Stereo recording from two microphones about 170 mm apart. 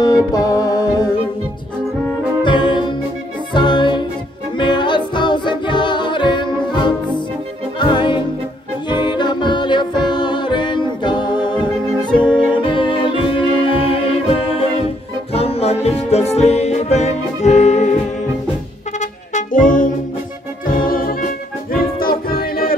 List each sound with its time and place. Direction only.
0.0 s music: 20° left (ahead or behind)
2.4 s music: 25° left (ahead or behind)
18.9 s music: 45° left (ahead or behind)